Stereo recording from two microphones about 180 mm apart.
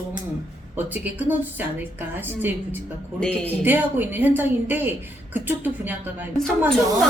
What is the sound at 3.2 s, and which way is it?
Speech, 5° left (ahead or behind).